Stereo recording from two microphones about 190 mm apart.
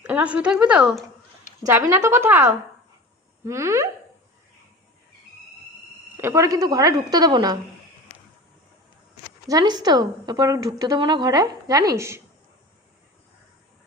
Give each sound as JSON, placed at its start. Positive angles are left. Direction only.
{"t": 0.0, "sound": "a woman's voice", "side_deg": -5}
{"t": 1.6, "sound": "speech", "side_deg": -15}
{"t": 6.1, "sound": "a woman's voice", "side_deg": -15}
{"t": 9.5, "sound": "a woman's voice", "side_deg": -20}